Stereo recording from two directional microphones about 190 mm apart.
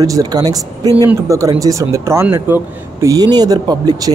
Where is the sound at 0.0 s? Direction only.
20° right (ahead or behind).